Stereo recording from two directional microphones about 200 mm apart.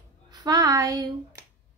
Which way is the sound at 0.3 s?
20° right (ahead or behind).